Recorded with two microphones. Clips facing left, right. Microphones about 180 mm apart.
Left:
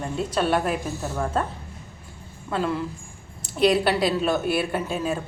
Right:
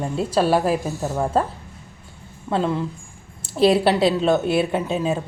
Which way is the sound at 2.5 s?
25° right (ahead or behind).